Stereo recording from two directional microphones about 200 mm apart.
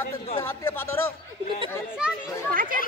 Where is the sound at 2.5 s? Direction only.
45° right (ahead or behind).